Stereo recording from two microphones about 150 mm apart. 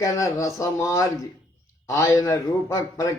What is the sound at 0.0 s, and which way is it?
A man's voice, 20° left (ahead or behind).